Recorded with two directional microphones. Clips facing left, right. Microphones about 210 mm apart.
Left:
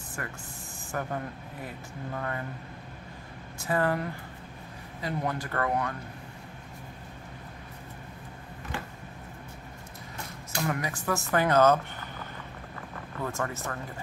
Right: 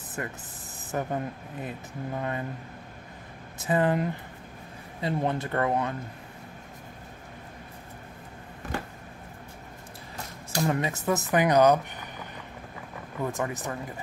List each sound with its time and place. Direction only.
0.2 s speech: 20° right (ahead or behind)
3.5 s speech: 20° right (ahead or behind)
10.5 s speech: 25° right (ahead or behind)
13.2 s speech: 15° right (ahead or behind)